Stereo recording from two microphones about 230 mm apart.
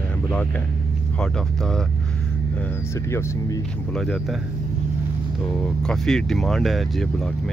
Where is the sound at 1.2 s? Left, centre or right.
Centre.